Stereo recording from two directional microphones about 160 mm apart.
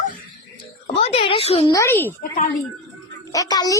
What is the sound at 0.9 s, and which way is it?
Speech, 40° left (ahead or behind).